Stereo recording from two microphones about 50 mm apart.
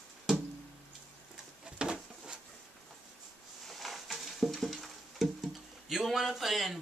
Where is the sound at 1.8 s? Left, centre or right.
Centre.